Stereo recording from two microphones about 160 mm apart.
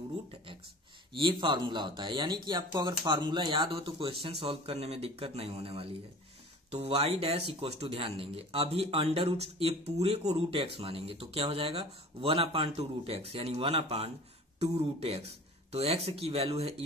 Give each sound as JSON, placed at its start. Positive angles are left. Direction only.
{"t": 1.1, "sound": "speech", "side_deg": -30}